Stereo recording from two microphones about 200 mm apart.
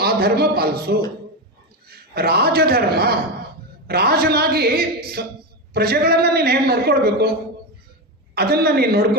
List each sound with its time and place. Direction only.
0.0 s a man's voice: 50° right (ahead or behind)
8.4 s a man's voice: 50° right (ahead or behind)